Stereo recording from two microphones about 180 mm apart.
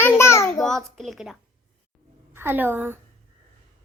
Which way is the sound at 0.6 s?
Centre (ahead or behind).